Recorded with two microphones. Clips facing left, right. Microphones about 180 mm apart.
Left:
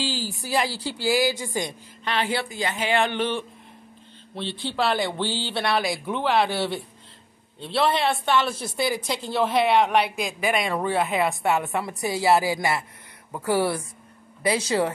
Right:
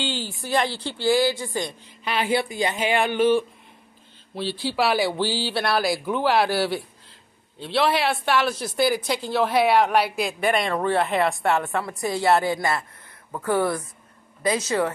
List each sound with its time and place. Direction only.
0.0 s speech: centre (ahead or behind); by 1.7 s 20° left (ahead or behind)
2.0 s speech: 10° right (ahead or behind); by 12.5 s 5° left (ahead or behind)
12.5 s speech: 20° left (ahead or behind)
13.5 s speech: 10° left (ahead or behind)
14.4 s speech: 30° left (ahead or behind)